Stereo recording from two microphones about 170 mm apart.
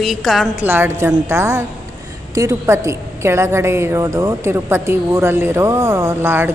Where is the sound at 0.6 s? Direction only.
10° right (ahead or behind).